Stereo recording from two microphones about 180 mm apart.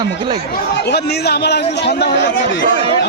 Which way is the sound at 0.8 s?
65° left (ahead or behind).